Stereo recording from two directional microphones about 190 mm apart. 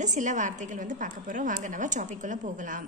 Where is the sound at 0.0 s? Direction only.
40° right (ahead or behind).